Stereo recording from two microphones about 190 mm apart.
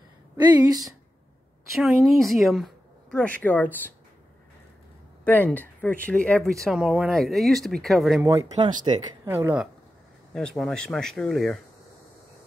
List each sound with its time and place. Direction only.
0.4 s speech: 20° right (ahead or behind)
1.7 s speech: centre (ahead or behind)
5.2 s speech: 10° left (ahead or behind)
8.6 s speech: 20° right (ahead or behind)
10.3 s speech: 5° left (ahead or behind)